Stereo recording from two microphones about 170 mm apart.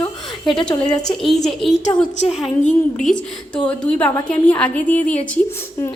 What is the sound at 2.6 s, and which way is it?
Speech, 45° left (ahead or behind).